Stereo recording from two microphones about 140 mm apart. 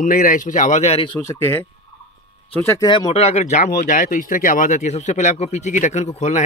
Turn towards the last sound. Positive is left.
turn(degrees=55)  # may be behind; listen again after turning